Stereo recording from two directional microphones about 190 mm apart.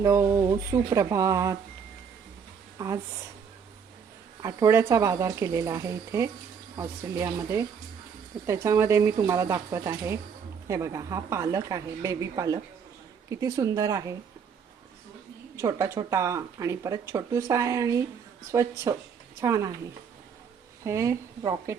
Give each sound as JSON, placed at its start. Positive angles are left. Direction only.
{"t": 0.0, "sound": "speech", "side_deg": -15}
{"t": 2.7, "sound": "a woman's voice", "side_deg": -20}
{"t": 4.4, "sound": "speech", "side_deg": -15}
{"t": 15.6, "sound": "speech", "side_deg": -15}
{"t": 20.8, "sound": "speech", "side_deg": -15}